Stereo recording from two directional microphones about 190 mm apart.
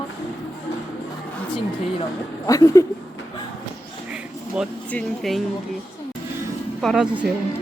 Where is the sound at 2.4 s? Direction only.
15° left (ahead or behind).